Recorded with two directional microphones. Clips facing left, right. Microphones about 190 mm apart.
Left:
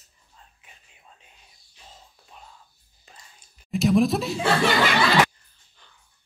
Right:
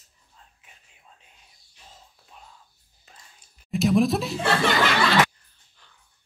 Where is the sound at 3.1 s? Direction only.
Centre (ahead or behind).